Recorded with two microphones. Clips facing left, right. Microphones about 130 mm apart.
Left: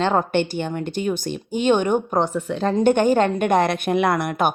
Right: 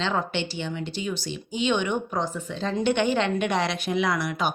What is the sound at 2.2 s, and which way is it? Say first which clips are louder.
Speech: left 7 dB; 65° left (ahead or behind).